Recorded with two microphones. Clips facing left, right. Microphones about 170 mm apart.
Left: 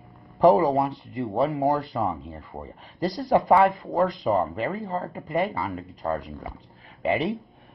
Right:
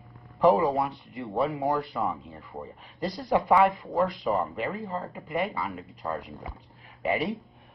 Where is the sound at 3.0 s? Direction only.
35° left (ahead or behind).